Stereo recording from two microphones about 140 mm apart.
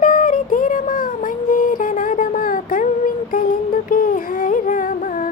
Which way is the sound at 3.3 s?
75° left (ahead or behind).